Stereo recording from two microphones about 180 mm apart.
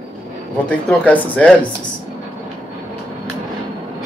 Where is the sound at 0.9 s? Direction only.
10° left (ahead or behind).